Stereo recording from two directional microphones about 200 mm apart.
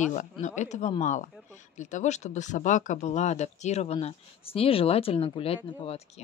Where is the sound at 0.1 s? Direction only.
35° left (ahead or behind).